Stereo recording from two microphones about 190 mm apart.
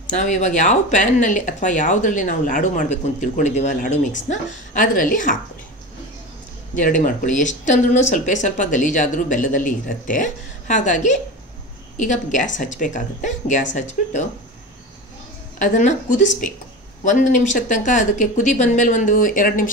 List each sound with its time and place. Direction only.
0.1 s speech: 40° left (ahead or behind)
6.7 s speech: 45° left (ahead or behind)
15.6 s speech: 40° left (ahead or behind)